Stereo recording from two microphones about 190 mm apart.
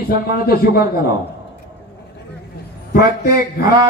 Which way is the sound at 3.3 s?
20° right (ahead or behind).